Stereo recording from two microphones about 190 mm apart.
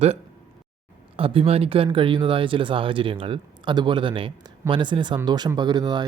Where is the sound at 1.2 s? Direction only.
30° right (ahead or behind).